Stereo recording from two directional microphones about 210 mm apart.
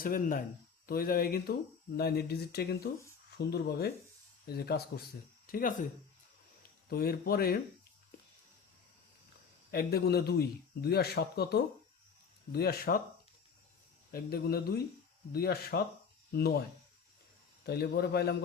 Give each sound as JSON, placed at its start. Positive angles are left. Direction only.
{"t": 0.0, "sound": "speech", "side_deg": 40}
{"t": 9.7, "sound": "speech", "side_deg": 50}
{"t": 14.1, "sound": "speech", "side_deg": 45}
{"t": 17.7, "sound": "speech", "side_deg": 50}